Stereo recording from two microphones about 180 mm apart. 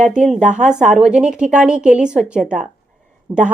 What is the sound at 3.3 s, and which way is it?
Speech, 15° right (ahead or behind).